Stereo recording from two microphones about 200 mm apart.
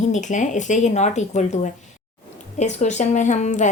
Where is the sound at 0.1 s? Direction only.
40° left (ahead or behind).